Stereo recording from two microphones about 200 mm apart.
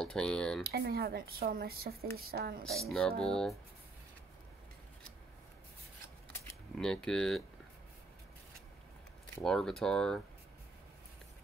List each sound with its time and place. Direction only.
0.0 s speech: 5° left (ahead or behind)
0.7 s a woman's voice: 50° right (ahead or behind)
2.6 s speech: 5° left (ahead or behind)
6.8 s speech: 5° left (ahead or behind)
9.4 s speech: centre (ahead or behind)